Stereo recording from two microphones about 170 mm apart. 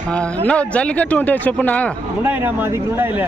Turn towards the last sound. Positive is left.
turn(degrees=-10)  # may be behind; listen again after turning